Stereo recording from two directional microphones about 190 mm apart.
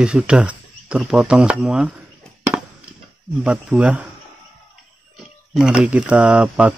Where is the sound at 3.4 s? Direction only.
Centre (ahead or behind).